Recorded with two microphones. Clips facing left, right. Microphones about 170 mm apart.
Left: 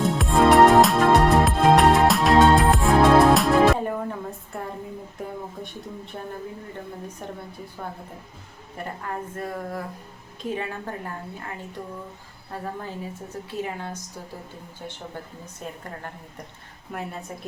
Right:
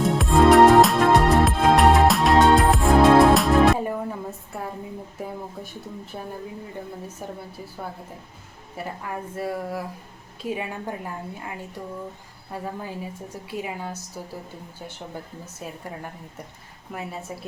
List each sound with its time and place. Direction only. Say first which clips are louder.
0.0 s music: right 2 dB; centre (ahead or behind)
6.1 s speech: even; 5° right (ahead or behind)
8.8 s a woman's voice: even; 10° right (ahead or behind)
12.5 s a woman's voice: right 1 dB; 10° right (ahead or behind)
15.6 s speech: even; 5° right (ahead or behind)
16.9 s speech: left 1 dB; centre (ahead or behind)